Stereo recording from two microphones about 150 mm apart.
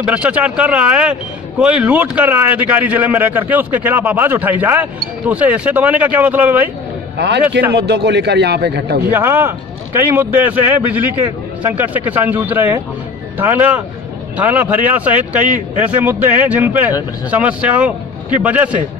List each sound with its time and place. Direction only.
0.0 s a man's voice: 10° right (ahead or behind)
7.7 s a man's voice: 90° right
9.1 s a man's voice: 15° right (ahead or behind)